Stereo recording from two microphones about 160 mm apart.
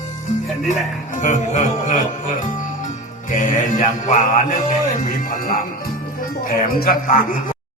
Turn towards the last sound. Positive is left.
turn(degrees=60)  # may be behind; listen again after turning